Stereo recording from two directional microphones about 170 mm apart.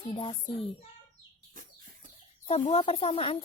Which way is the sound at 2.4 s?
40° left (ahead or behind).